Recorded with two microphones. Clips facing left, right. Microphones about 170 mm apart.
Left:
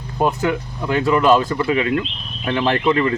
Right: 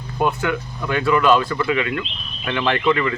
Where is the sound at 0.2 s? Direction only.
30° left (ahead or behind).